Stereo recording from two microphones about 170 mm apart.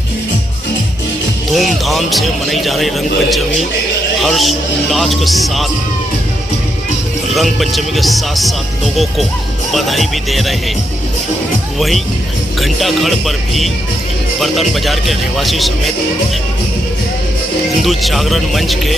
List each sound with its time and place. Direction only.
1.5 s speech: centre (ahead or behind)
7.3 s speech: centre (ahead or behind)
12.5 s speech: centre (ahead or behind)
17.8 s speech: centre (ahead or behind)